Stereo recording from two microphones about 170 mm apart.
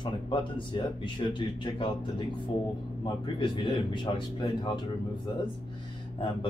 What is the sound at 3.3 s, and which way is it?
Speech, 30° left (ahead or behind).